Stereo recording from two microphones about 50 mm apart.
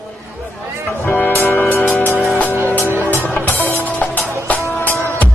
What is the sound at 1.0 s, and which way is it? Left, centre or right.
Music, left.